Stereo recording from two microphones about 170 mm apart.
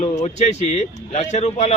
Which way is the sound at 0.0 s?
40° left (ahead or behind).